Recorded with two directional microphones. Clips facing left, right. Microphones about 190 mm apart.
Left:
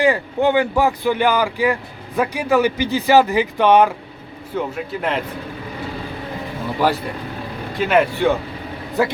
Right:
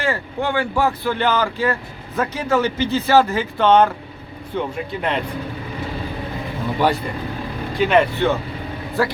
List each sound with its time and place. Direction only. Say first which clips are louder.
0.0 s speech: left 6 dB; 15° left (ahead or behind)
6.8 s speech: left 1 dB; 5° left (ahead or behind)
9.0 s speech: left 2 dB; 20° left (ahead or behind)